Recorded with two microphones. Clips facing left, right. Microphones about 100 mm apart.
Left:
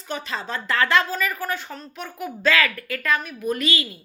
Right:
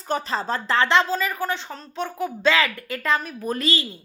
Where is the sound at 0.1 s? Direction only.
35° right (ahead or behind).